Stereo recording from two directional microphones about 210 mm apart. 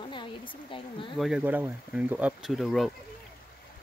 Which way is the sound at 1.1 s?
Centre (ahead or behind).